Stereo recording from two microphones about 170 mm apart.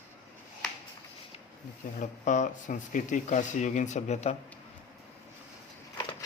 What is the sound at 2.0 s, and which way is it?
Speech, 50° left (ahead or behind).